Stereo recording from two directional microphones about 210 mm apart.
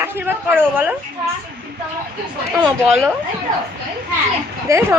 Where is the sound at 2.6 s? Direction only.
Centre (ahead or behind).